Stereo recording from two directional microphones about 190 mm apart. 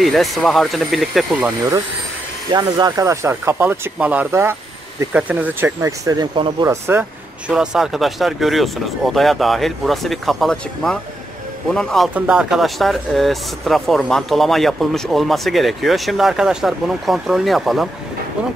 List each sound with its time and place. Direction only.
0.0 s speech: centre (ahead or behind)
2.5 s speech: 20° right (ahead or behind)
6.7 s speech: 10° right (ahead or behind)